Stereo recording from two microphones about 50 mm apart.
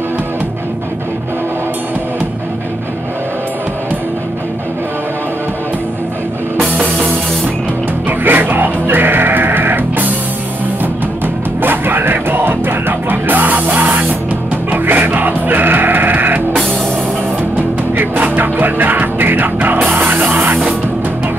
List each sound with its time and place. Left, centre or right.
8.1 s music: right
11.6 s music: right
18.1 s music: right